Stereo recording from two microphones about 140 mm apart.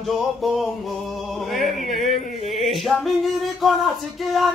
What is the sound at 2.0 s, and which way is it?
Music, 45° left (ahead or behind).